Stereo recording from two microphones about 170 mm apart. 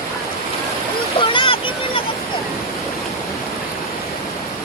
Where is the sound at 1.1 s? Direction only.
30° left (ahead or behind).